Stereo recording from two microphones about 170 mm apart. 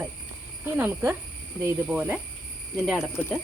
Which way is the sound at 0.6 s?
15° right (ahead or behind).